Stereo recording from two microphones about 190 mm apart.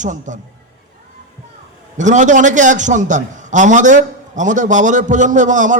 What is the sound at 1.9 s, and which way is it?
A man's voice, 40° right (ahead or behind).